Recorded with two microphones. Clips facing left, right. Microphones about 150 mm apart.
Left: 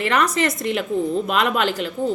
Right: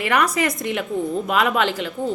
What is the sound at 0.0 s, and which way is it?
A woman's voice, 10° right (ahead or behind).